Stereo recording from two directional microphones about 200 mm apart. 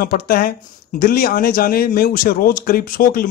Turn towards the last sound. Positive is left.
turn(degrees=45)  # may be behind; listen again after turning